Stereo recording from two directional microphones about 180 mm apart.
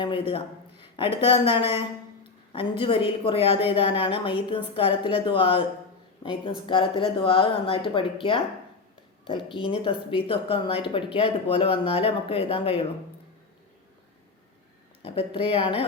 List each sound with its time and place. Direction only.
0.0 s a woman's voice: 30° left (ahead or behind)
15.0 s a woman's voice: 30° left (ahead or behind)